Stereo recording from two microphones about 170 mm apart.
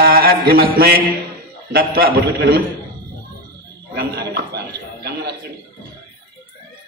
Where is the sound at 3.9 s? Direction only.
70° right (ahead or behind).